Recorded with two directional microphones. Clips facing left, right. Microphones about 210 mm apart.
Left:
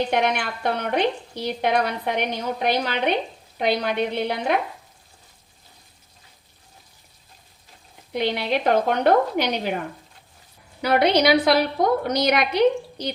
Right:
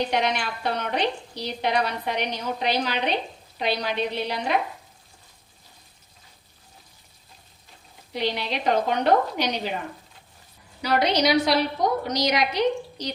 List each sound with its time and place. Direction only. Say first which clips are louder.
0.1 s a woman's voice: left 3 dB; 55° left (ahead or behind)
8.1 s speech: left 4 dB; 55° left (ahead or behind)
10.8 s speech: left 4 dB; 60° left (ahead or behind)